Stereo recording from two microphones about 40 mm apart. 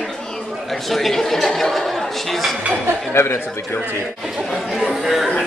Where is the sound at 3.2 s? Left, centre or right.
Left.